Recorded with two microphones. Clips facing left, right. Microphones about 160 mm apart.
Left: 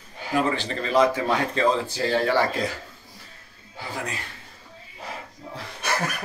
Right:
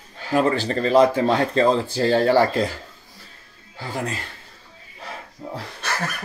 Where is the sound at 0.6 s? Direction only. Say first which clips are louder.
Right 6 dB; 35° right (ahead or behind).